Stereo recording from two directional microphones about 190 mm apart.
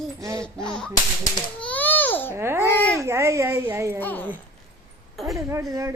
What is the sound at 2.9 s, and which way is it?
A child's voice, 15° right (ahead or behind).